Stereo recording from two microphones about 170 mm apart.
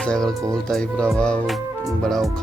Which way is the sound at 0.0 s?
5° left (ahead or behind).